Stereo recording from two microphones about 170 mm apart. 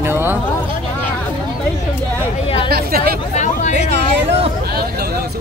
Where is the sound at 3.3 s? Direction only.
45° left (ahead or behind).